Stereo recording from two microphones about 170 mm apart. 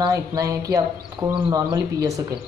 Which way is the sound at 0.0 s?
20° right (ahead or behind).